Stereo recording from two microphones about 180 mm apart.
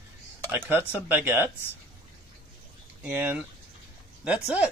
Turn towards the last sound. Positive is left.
turn(degrees=-5)  # may be behind; listen again after turning